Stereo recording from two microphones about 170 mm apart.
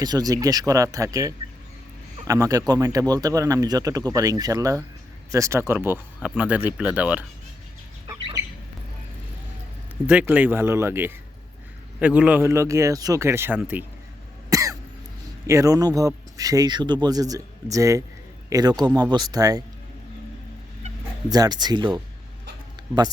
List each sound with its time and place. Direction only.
0.0 s a man's voice: 20° right (ahead or behind)
8.0 s chicken: 25° right (ahead or behind)
10.1 s speech: 10° right (ahead or behind)
14.5 s cough: 20° right (ahead or behind)
15.4 s a man's voice: 20° right (ahead or behind)
21.2 s a man's voice: 20° right (ahead or behind)